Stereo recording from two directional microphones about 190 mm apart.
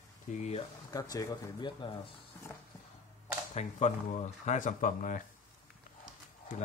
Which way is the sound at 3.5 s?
35° left (ahead or behind).